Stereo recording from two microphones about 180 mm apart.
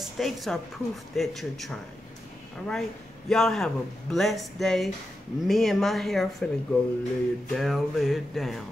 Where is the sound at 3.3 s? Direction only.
Centre (ahead or behind).